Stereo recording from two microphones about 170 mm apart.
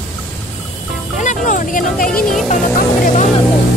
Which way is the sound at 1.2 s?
45° left (ahead or behind).